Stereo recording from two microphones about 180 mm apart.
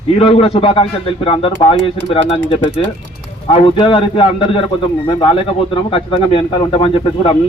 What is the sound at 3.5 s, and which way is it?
A man's voice, 30° left (ahead or behind).